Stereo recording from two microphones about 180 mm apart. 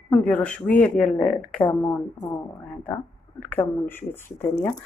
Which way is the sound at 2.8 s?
10° left (ahead or behind).